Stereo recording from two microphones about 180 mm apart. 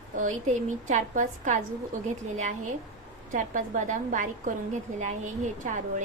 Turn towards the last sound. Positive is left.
turn(degrees=-45)  # may be behind; listen again after turning